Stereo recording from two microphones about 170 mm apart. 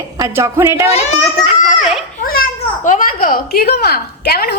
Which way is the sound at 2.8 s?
50° left (ahead or behind).